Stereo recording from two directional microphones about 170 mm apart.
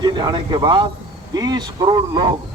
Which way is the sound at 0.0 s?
25° right (ahead or behind).